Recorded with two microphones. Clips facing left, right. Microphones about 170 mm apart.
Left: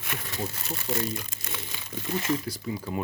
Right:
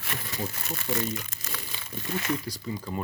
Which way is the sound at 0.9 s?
10° right (ahead or behind).